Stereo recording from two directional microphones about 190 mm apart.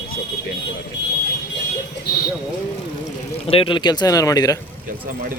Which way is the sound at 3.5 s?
30° left (ahead or behind).